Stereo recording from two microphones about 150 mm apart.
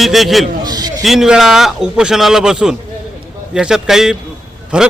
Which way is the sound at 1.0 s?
Centre (ahead or behind).